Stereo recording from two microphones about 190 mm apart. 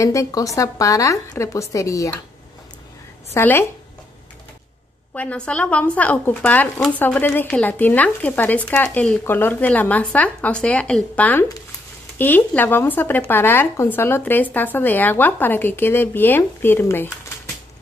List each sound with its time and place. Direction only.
0.0 s speech: 15° left (ahead or behind)
3.3 s speech: 10° left (ahead or behind)
5.1 s speech: 5° left (ahead or behind)